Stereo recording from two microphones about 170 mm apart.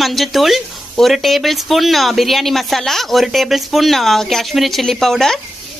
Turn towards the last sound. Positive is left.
turn(degrees=0)  # may be behind; listen again after turning